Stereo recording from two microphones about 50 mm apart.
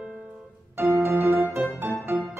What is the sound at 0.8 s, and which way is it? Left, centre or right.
Music, right.